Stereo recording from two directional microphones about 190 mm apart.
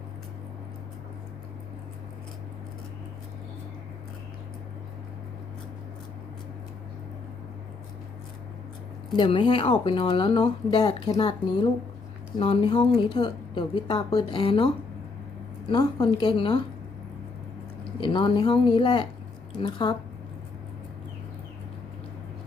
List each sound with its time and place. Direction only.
9.1 s a woman's voice: 25° left (ahead or behind)
15.7 s a woman's voice: 20° left (ahead or behind)
18.0 s a woman's voice: 25° left (ahead or behind)